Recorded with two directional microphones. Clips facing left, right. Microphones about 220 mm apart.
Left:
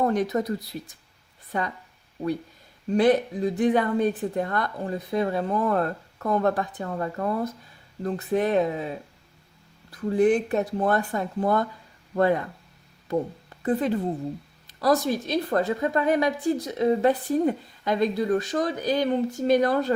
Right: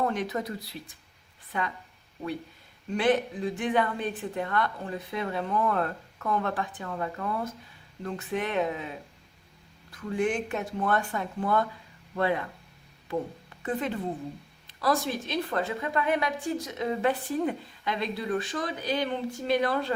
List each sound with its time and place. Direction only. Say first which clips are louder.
0.0 s a woman's voice: left 6 dB; 40° left (ahead or behind)
2.9 s a woman's voice: left 5 dB; 40° left (ahead or behind)
9.9 s a woman's voice: left 8 dB; 35° left (ahead or behind)
13.6 s a woman's voice: left 7 dB; 35° left (ahead or behind)